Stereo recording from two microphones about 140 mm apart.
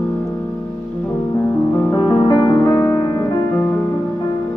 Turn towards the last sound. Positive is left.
turn(degrees=25)  # may be behind; listen again after turning